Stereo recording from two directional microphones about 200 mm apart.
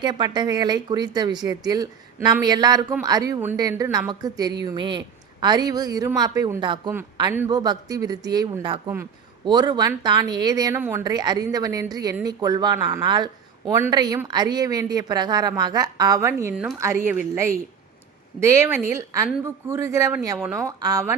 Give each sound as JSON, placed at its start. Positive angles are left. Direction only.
{"t": 0.0, "sound": "a woman's voice", "side_deg": -20}
{"t": 18.3, "sound": "speech", "side_deg": -15}